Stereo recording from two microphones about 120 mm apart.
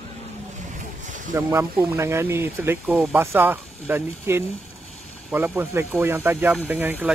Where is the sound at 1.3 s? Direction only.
20° right (ahead or behind).